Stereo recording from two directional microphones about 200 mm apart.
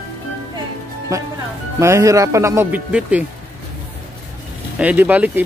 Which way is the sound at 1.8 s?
15° right (ahead or behind).